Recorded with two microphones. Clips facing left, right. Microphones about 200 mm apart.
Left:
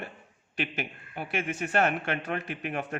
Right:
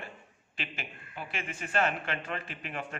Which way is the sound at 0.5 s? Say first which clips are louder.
Left 8 dB; 70° left (ahead or behind).